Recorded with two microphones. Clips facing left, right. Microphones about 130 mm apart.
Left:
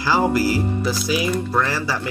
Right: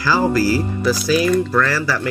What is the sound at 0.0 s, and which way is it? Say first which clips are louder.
Speech: right 2 dB; 20° left (ahead or behind).